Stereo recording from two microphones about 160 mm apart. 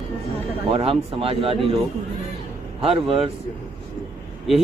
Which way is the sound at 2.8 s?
35° right (ahead or behind).